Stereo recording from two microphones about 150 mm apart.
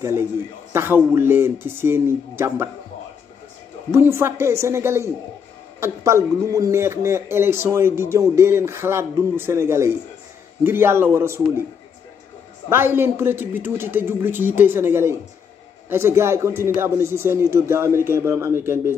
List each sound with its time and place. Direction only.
0.0 s speech: 15° right (ahead or behind)
3.9 s speech: 15° right (ahead or behind)
12.6 s speech: 15° right (ahead or behind)